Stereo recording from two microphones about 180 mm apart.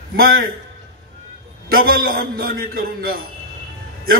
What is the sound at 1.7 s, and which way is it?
A man's voice, 55° right (ahead or behind).